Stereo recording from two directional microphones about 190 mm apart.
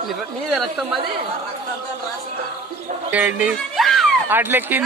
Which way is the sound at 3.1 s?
10° right (ahead or behind).